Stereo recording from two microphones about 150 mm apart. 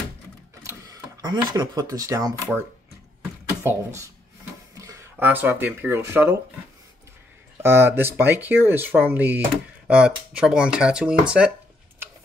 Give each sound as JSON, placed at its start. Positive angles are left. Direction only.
{"t": 1.2, "sound": "speech", "side_deg": -30}
{"t": 3.6, "sound": "speech", "side_deg": -15}
{"t": 4.7, "sound": "a sound", "side_deg": -20}
{"t": 5.2, "sound": "speech", "side_deg": -10}
{"t": 7.6, "sound": "speech", "side_deg": -15}